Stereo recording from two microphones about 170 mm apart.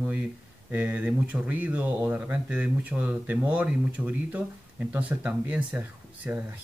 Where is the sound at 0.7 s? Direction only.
10° right (ahead or behind).